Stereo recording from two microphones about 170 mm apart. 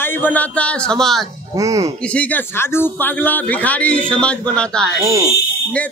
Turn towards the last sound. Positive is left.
turn(degrees=-20)  # may be behind; listen again after turning